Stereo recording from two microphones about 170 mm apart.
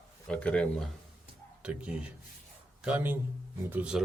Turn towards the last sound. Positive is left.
turn(degrees=-10)  # may be behind; listen again after turning